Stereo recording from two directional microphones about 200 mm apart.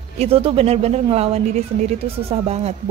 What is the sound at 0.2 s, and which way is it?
Speech, 30° right (ahead or behind).